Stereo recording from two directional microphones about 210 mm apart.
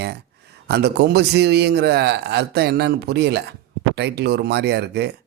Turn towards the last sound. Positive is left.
turn(degrees=-55)  # may be behind; listen again after turning